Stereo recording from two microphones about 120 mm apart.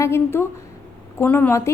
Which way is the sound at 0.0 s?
20° left (ahead or behind).